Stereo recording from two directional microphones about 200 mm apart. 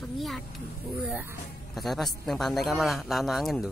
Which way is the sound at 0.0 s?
Centre (ahead or behind).